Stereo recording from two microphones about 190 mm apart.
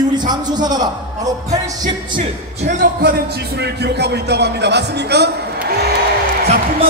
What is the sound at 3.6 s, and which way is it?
Speech, 60° right (ahead or behind).